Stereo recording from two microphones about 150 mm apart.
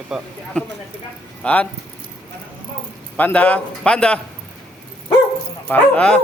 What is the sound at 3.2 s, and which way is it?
A man's voice, 10° left (ahead or behind).